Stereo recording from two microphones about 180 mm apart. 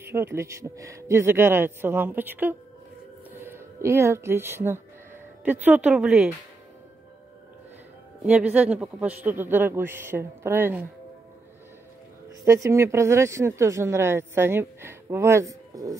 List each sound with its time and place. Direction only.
0.0 s speech: 15° right (ahead or behind)
8.2 s speech: 5° right (ahead or behind)
12.3 s speech: 15° right (ahead or behind)